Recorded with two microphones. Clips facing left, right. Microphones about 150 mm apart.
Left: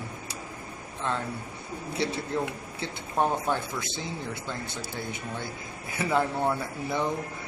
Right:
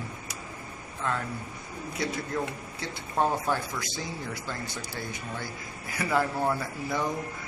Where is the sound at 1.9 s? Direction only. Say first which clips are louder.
Left 2 dB; 30° left (ahead or behind).